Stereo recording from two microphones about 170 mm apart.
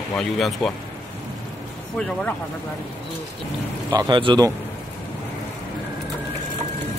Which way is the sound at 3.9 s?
25° right (ahead or behind).